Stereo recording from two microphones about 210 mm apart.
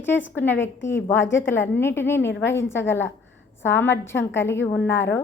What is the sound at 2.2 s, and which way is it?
Speech, 60° left (ahead or behind).